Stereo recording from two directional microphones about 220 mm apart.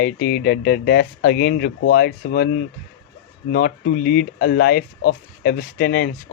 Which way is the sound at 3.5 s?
40° left (ahead or behind).